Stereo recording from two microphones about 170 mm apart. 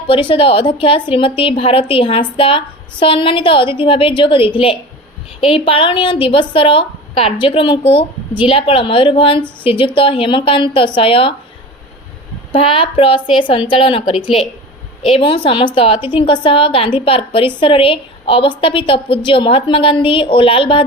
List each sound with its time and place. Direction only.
0.1 s a woman's voice: 30° left (ahead or behind)
12.5 s a woman's voice: 30° left (ahead or behind)
15.1 s a woman's voice: 30° left (ahead or behind)